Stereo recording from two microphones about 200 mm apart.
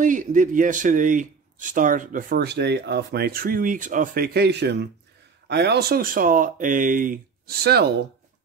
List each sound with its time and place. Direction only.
0.0 s speech: 40° right (ahead or behind)